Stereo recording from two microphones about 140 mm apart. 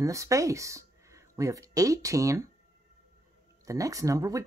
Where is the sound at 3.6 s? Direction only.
25° right (ahead or behind).